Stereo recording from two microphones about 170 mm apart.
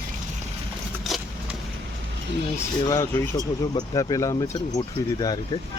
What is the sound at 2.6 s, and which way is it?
Speech, 15° left (ahead or behind).